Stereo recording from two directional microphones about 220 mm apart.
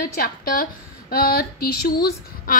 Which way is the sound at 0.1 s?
40° left (ahead or behind).